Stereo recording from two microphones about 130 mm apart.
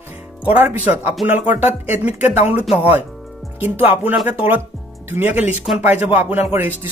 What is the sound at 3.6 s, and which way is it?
A man's voice, 15° right (ahead or behind).